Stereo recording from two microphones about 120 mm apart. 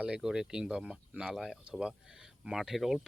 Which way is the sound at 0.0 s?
5° right (ahead or behind).